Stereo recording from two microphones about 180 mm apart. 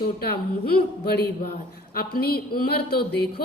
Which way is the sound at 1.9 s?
60° left (ahead or behind).